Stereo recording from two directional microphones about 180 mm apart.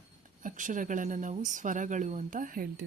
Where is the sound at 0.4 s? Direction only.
45° right (ahead or behind).